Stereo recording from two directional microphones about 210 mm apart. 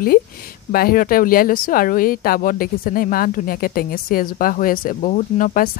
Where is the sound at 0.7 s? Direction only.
45° left (ahead or behind).